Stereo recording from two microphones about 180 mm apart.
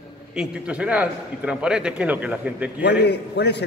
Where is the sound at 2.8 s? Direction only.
70° left (ahead or behind).